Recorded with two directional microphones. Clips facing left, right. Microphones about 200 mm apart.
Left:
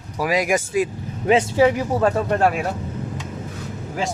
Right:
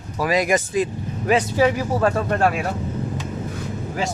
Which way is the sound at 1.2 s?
20° left (ahead or behind).